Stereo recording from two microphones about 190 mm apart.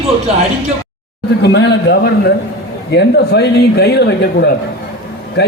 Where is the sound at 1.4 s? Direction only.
60° left (ahead or behind).